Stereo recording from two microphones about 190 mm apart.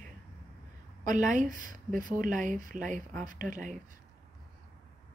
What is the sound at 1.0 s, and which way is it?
Speech, 40° right (ahead or behind).